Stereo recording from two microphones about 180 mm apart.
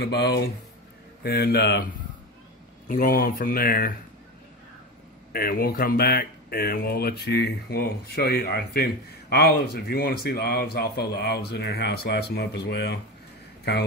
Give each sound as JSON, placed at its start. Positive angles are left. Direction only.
{"t": 0.0, "sound": "speech", "side_deg": 65}
{"t": 2.9, "sound": "speech", "side_deg": 50}
{"t": 5.3, "sound": "speech", "side_deg": 55}